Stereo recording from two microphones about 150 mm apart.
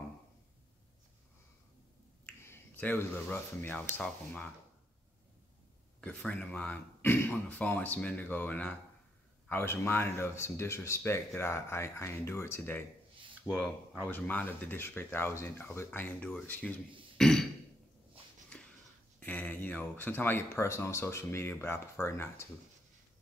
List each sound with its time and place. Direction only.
2.2 s speech: 10° left (ahead or behind)
5.9 s speech: 5° left (ahead or behind)
13.5 s speech: centre (ahead or behind)
14.1 s speech: 10° left (ahead or behind)
17.2 s throat clearing: 5° left (ahead or behind)
18.5 s a sound: 5° left (ahead or behind)
19.1 s speech: 10° left (ahead or behind)